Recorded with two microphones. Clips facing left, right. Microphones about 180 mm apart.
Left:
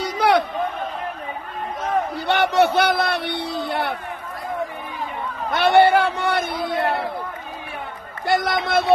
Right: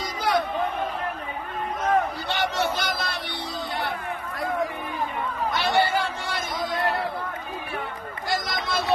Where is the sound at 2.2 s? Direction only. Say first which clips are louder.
Left 8 dB; 60° left (ahead or behind).